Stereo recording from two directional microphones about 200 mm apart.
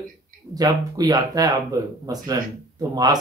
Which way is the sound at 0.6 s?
20° right (ahead or behind).